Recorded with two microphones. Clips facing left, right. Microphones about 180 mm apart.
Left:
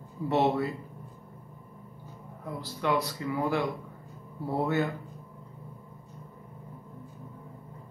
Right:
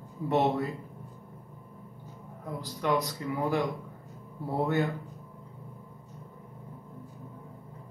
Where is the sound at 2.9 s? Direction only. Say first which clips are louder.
Even; 15° right (ahead or behind).